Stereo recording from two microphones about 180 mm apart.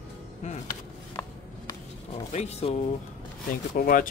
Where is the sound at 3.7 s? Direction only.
50° left (ahead or behind).